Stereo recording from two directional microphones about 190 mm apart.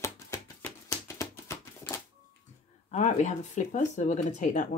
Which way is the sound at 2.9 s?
35° left (ahead or behind).